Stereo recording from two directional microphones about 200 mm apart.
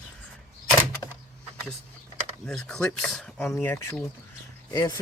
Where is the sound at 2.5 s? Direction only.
Centre (ahead or behind).